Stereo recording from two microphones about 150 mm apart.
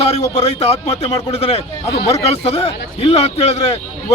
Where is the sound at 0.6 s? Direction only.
45° left (ahead or behind).